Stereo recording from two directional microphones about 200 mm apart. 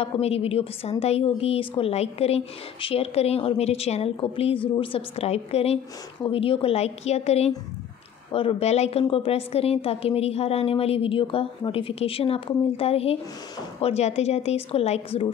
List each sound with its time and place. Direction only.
0.0 s a woman's voice: 30° left (ahead or behind)